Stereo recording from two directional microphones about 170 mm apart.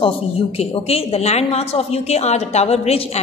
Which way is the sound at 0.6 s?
35° left (ahead or behind).